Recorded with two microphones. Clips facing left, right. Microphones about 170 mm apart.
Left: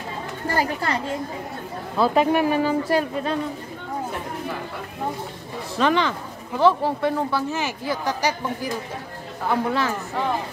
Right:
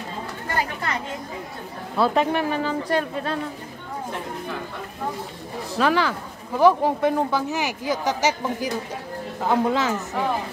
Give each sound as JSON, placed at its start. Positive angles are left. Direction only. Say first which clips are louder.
{"t": 0.5, "sound": "speech", "louder": "left 4 dB", "side_deg": 35}
{"t": 2.0, "sound": "speech", "louder": "left 2 dB", "side_deg": 5}
{"t": 5.8, "sound": "speech", "louder": "even", "side_deg": -5}
{"t": 6.6, "sound": "speech", "louder": "right 2 dB", "side_deg": -15}